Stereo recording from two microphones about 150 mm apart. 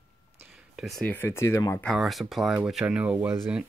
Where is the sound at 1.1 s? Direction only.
15° left (ahead or behind).